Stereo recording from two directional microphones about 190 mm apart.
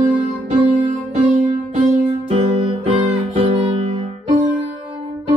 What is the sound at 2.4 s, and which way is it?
Music, 30° right (ahead or behind).